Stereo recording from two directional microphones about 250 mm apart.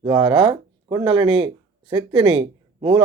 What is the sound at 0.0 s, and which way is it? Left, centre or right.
A man's voice, right.